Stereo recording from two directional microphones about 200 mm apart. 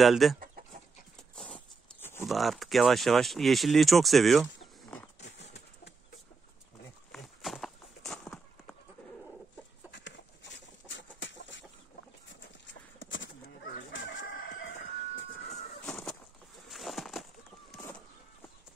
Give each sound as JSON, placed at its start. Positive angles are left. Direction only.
{"t": 0.0, "sound": "speech", "side_deg": 0}
{"t": 1.3, "sound": "a sound", "side_deg": 5}
{"t": 2.2, "sound": "speech", "side_deg": 0}
{"t": 5.2, "sound": "horse", "side_deg": 60}
{"t": 7.1, "sound": "walk", "side_deg": 0}
{"t": 9.9, "sound": "chicken", "side_deg": 60}
{"t": 15.8, "sound": "a sound", "side_deg": 5}